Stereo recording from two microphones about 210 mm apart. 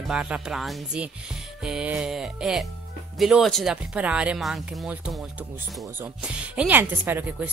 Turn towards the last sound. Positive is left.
turn(degrees=-10)  # may be behind; listen again after turning